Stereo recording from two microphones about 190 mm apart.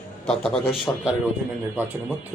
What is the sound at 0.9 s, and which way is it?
Speech, 15° left (ahead or behind).